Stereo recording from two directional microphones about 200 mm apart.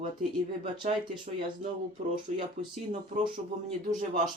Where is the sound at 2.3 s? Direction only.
35° right (ahead or behind).